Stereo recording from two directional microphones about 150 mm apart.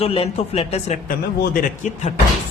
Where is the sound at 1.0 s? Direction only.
60° left (ahead or behind).